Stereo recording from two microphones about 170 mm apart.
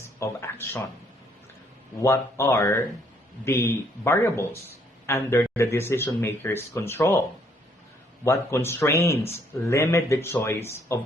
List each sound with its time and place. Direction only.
0.0 s a sound: 15° left (ahead or behind)
2.0 s speech: 15° left (ahead or behind)
8.2 s speech: 15° left (ahead or behind)